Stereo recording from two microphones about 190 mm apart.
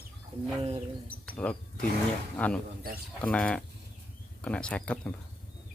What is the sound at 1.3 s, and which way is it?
Speech, 5° left (ahead or behind).